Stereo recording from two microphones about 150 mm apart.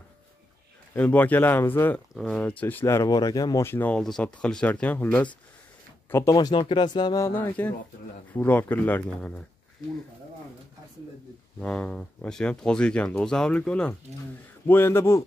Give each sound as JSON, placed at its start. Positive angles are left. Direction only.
{"t": 0.9, "sound": "speech", "side_deg": 10}
{"t": 7.2, "sound": "speech", "side_deg": 15}
{"t": 11.6, "sound": "speech", "side_deg": 10}